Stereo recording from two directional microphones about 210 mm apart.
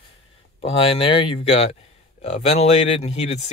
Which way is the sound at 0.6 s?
25° left (ahead or behind).